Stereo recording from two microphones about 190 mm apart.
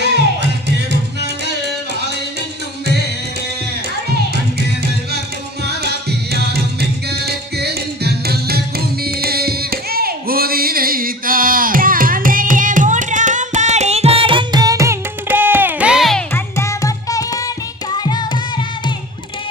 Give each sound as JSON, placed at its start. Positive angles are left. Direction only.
{"t": 5.6, "sound": "music", "side_deg": -60}
{"t": 9.0, "sound": "singing", "side_deg": -55}
{"t": 16.3, "sound": "music", "side_deg": 15}
{"t": 17.9, "sound": "carnatic music", "side_deg": 20}